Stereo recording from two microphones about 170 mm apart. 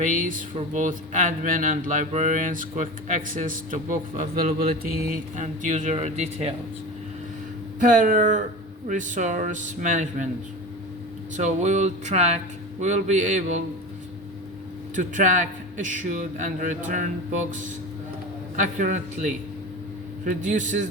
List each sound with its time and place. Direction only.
0.0 s speech: 50° right (ahead or behind)
7.8 s speech: 50° right (ahead or behind)
11.3 s speech: 45° right (ahead or behind)
14.9 s speech: 50° right (ahead or behind)
18.5 s speech: 50° right (ahead or behind)